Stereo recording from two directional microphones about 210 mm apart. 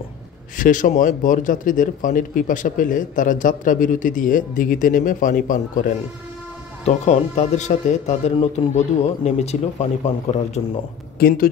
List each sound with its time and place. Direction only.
0.6 s a man's voice: 40° left (ahead or behind)
11.1 s speech: 45° left (ahead or behind)